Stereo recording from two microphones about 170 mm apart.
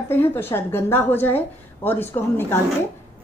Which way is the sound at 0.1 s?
15° left (ahead or behind).